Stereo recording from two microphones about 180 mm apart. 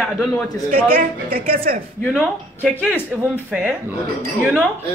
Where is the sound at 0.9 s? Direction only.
55° right (ahead or behind).